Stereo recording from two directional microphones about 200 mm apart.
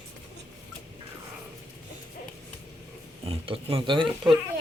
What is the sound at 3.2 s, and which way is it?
Speech, 30° right (ahead or behind).